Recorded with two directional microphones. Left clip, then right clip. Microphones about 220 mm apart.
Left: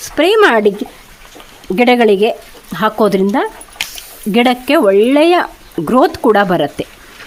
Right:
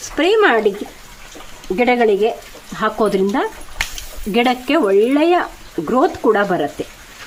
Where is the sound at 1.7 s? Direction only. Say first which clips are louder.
Left 4 dB; 50° left (ahead or behind).